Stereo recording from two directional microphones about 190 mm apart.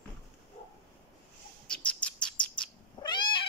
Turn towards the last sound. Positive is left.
turn(degrees=25)  # may be behind; listen again after turning